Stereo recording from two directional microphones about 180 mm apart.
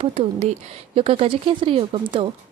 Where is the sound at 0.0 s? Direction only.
30° right (ahead or behind).